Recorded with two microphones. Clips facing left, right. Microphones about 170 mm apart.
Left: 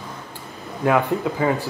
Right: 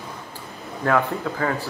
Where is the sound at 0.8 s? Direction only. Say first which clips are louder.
Left 3 dB; 15° left (ahead or behind).